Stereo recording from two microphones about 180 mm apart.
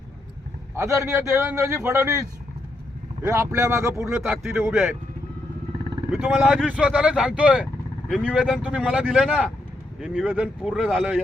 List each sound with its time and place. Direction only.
0.8 s speech: 15° right (ahead or behind)
4.4 s speech: centre (ahead or behind)
6.1 s speech: 10° right (ahead or behind)